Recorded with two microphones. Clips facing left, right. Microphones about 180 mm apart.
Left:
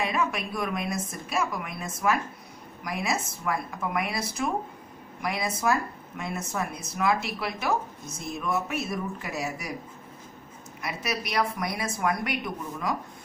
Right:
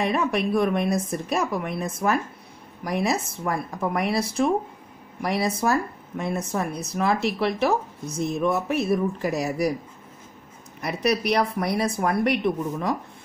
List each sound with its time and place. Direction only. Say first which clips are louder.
0.1 s speech: right 6 dB; 35° right (ahead or behind)
10.8 s speech: right 8 dB; 35° right (ahead or behind)